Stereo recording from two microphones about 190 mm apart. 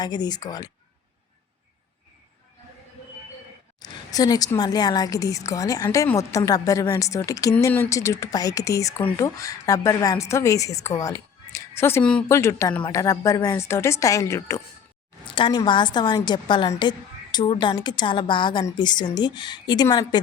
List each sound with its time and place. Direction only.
0.0 s speech: 20° left (ahead or behind)
3.8 s speech: 20° left (ahead or behind)
15.2 s speech: 25° left (ahead or behind)